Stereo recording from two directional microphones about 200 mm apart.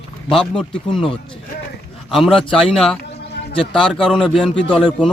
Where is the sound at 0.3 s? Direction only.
5° left (ahead or behind).